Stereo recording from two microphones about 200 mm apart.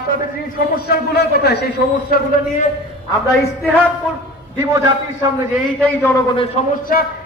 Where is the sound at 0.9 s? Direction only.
55° left (ahead or behind).